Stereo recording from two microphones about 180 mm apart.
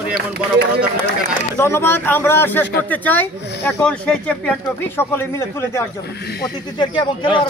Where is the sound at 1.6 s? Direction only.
15° left (ahead or behind).